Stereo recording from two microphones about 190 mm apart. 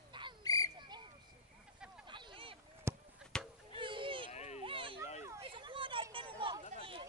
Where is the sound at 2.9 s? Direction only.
15° right (ahead or behind).